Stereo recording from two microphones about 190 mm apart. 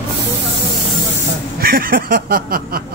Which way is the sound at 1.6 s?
50° right (ahead or behind).